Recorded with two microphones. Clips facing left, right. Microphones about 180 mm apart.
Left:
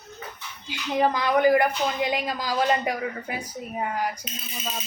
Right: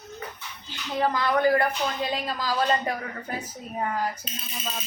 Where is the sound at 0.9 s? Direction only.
15° left (ahead or behind).